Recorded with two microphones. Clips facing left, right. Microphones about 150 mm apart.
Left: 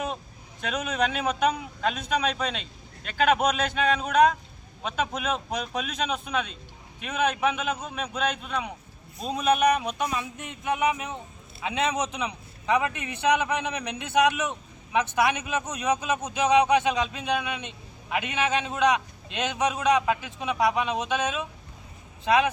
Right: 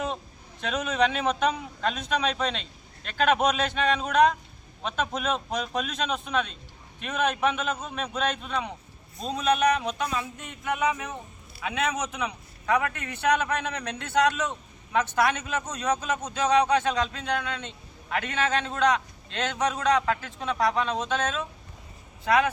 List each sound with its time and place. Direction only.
0.6 s a man's voice: centre (ahead or behind); by 22.4 s 20° left (ahead or behind)